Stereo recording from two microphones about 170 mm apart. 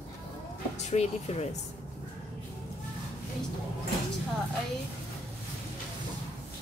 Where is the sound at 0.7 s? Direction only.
40° left (ahead or behind).